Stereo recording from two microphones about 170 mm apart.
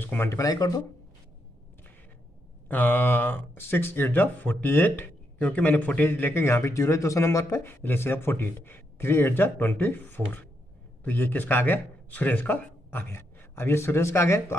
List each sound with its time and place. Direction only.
0.0 s speech: 10° left (ahead or behind)
2.7 s speech: 10° left (ahead or behind)